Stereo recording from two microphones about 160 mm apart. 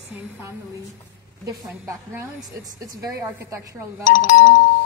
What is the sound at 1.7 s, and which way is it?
A woman's voice, 15° right (ahead or behind).